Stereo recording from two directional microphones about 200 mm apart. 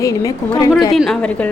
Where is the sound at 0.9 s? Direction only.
Centre (ahead or behind).